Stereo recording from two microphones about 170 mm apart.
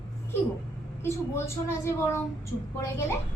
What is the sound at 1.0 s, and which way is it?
A woman's voice, 15° left (ahead or behind).